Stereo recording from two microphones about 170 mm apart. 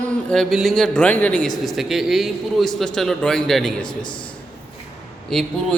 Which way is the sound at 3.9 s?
25° left (ahead or behind).